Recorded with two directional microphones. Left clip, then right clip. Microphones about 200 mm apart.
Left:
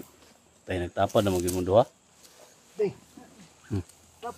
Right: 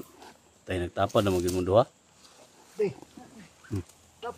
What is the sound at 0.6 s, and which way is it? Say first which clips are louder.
Speech: left 1 dB; centre (ahead or behind).